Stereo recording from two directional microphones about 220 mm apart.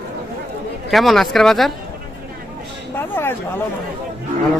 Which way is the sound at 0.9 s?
Centre (ahead or behind).